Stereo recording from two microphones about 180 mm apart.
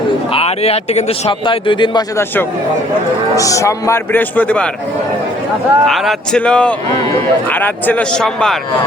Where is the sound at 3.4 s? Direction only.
20° left (ahead or behind).